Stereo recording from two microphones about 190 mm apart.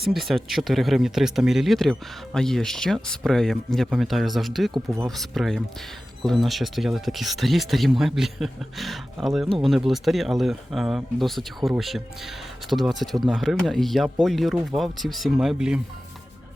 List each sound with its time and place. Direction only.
0.0 s speech: centre (ahead or behind)